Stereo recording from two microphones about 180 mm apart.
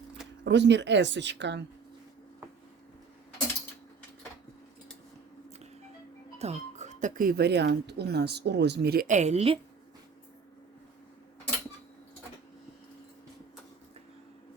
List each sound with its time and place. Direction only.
0.4 s speech: 75° right (ahead or behind)
6.4 s speech: 40° right (ahead or behind)